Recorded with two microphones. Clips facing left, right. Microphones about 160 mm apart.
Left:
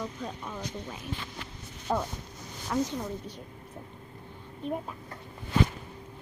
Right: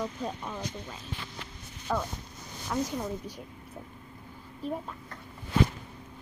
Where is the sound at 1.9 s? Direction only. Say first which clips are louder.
Left 1 dB; 20° left (ahead or behind).